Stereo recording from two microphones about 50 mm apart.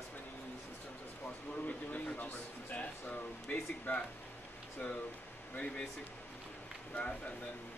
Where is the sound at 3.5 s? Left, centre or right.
Left.